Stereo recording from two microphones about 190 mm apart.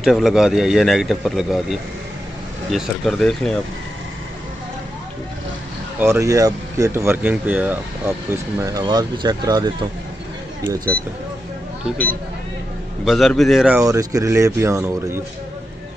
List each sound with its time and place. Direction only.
0.0 s a man's voice: centre (ahead or behind)
5.9 s speech: 15° right (ahead or behind)
13.0 s a man's voice: centre (ahead or behind)
13.8 s speech: 15° right (ahead or behind)